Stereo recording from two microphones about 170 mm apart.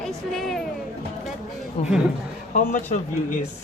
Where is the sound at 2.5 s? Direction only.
50° left (ahead or behind).